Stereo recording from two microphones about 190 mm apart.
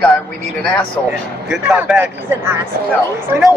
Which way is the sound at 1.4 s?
5° right (ahead or behind).